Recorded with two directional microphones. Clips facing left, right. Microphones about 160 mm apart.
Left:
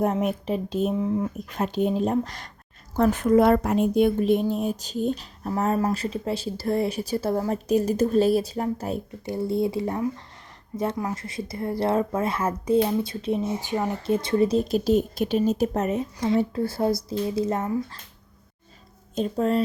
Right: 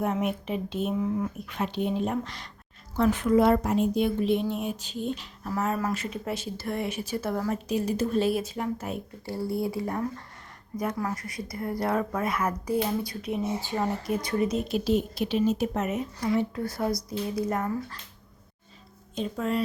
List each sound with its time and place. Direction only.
0.0 s speech: 40° left (ahead or behind)
1.0 s a woman's voice: 25° left (ahead or behind)
1.4 s speech: 40° left (ahead or behind)
7.7 s speech: 45° left (ahead or behind)
9.2 s a woman's voice: 20° left (ahead or behind)
13.6 s speech: 15° left (ahead or behind)
14.1 s a woman's voice: 25° left (ahead or behind)
19.1 s speech: 40° left (ahead or behind)